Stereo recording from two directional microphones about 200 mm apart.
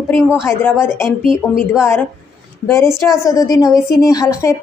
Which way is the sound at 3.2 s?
15° left (ahead or behind).